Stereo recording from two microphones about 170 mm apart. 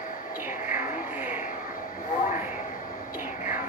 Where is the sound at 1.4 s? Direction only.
50° left (ahead or behind).